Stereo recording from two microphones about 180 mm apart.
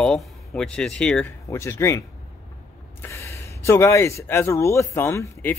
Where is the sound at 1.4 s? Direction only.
15° left (ahead or behind).